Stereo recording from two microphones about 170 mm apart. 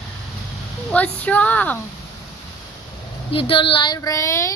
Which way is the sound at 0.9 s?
10° left (ahead or behind).